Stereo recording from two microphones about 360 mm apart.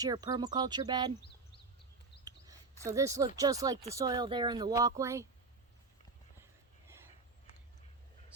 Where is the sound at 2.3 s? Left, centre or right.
Centre.